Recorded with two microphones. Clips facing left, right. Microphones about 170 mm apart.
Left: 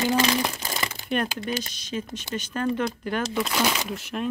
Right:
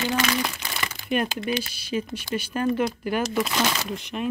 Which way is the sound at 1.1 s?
5° right (ahead or behind).